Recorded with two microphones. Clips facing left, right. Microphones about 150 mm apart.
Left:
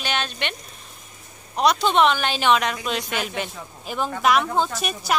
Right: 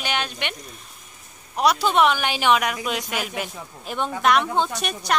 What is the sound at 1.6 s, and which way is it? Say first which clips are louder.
A woman's voice: even; 10° right (ahead or behind).